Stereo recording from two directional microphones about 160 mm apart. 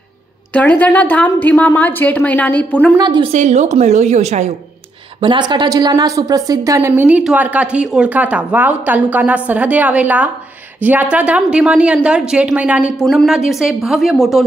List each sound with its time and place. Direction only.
0.5 s a woman's voice: 10° left (ahead or behind)
3.0 s a woman's voice: 30° right (ahead or behind)
3.3 s a woman's voice: 45° right (ahead or behind)
5.2 s a woman's voice: 30° right (ahead or behind); by 14.4 s centre (ahead or behind)